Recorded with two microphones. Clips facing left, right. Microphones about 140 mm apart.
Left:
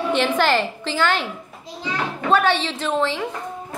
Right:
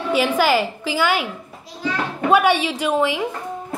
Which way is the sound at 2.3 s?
10° right (ahead or behind).